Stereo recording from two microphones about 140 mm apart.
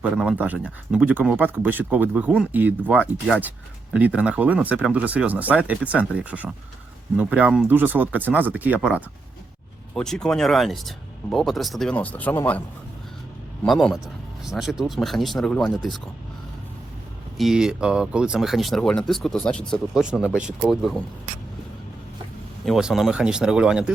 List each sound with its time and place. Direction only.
0.0 s speech: 5° right (ahead or behind)
9.9 s speech: 5° left (ahead or behind)
13.7 s speech: centre (ahead or behind)
17.3 s speech: 5° right (ahead or behind)
20.0 s speech: 5° right (ahead or behind)
22.6 s speech: 5° right (ahead or behind)